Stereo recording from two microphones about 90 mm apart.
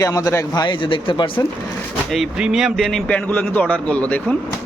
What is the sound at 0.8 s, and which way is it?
Speech, 70° left (ahead or behind).